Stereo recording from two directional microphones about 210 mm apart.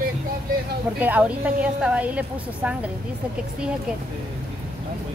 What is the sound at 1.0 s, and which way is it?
A woman's voice, 5° right (ahead or behind).